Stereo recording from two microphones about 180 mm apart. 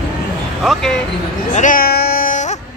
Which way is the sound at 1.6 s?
50° left (ahead or behind).